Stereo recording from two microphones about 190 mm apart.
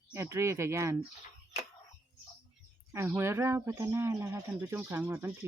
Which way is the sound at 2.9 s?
10° right (ahead or behind).